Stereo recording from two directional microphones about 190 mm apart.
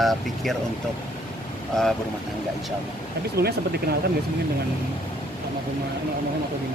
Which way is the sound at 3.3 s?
55° right (ahead or behind).